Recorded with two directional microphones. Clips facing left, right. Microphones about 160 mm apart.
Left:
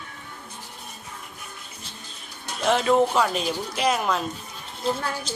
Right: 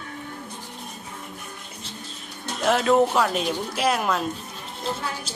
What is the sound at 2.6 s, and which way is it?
Speech, centre (ahead or behind).